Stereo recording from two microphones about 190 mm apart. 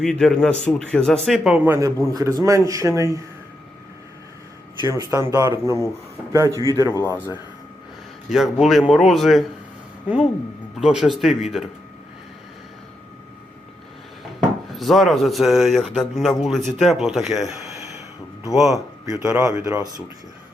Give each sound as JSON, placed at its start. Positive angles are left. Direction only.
{"t": 0.0, "sound": "a man's voice", "side_deg": 5}
{"t": 4.9, "sound": "a man's voice", "side_deg": -15}
{"t": 6.5, "sound": "a man's voice", "side_deg": 15}
{"t": 8.3, "sound": "speech", "side_deg": 0}
{"t": 10.8, "sound": "speech", "side_deg": 0}
{"t": 14.7, "sound": "speech", "side_deg": 0}
{"t": 18.5, "sound": "speech", "side_deg": 0}
{"t": 19.2, "sound": "a man's voice", "side_deg": -15}